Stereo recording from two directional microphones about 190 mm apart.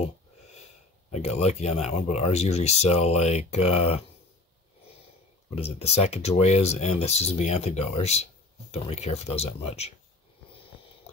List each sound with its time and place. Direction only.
1.1 s speech: 35° left (ahead or behind)
5.5 s speech: 35° left (ahead or behind)